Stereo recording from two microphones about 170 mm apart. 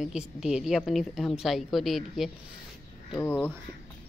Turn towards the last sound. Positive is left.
turn(degrees=10)  # may be behind; listen again after turning